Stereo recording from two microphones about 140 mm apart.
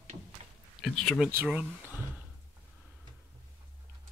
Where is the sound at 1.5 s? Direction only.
5° right (ahead or behind).